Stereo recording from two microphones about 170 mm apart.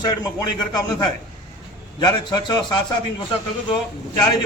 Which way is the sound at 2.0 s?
25° left (ahead or behind).